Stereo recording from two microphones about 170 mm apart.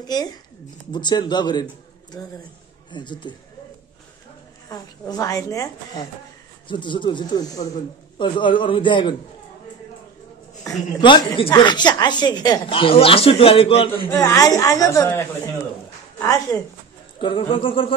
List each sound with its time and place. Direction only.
0.0 s speech: 20° left (ahead or behind)
2.9 s speech: 25° left (ahead or behind)
4.6 s speech: 20° left (ahead or behind)
10.6 s speech: 25° left (ahead or behind)
14.0 s a woman's voice: 15° left (ahead or behind)
17.2 s speech: 30° left (ahead or behind)